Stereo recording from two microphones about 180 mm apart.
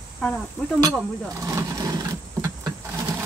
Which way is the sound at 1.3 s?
20° right (ahead or behind).